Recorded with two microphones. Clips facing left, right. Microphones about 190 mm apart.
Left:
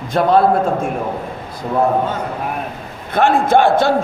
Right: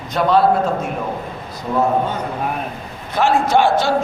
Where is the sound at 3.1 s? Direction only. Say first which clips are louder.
Left 2 dB; 55° left (ahead or behind).